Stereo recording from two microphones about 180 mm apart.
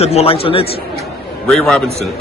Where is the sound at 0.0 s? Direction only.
35° left (ahead or behind).